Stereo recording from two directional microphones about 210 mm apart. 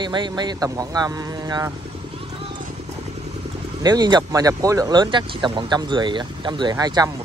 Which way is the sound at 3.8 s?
20° right (ahead or behind).